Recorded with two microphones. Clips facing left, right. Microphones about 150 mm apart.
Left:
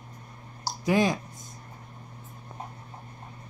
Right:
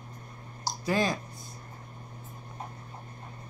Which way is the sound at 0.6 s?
15° left (ahead or behind).